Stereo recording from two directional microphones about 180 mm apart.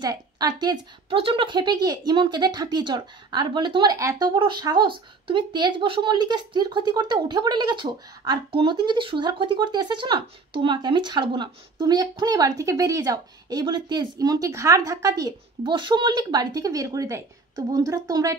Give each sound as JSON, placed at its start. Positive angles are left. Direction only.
{"t": 0.0, "sound": "a woman's voice", "side_deg": -20}